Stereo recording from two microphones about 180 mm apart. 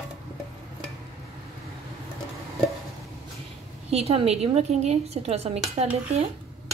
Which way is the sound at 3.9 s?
35° right (ahead or behind).